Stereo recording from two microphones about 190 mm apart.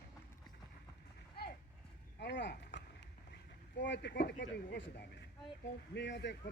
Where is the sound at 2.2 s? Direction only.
65° left (ahead or behind).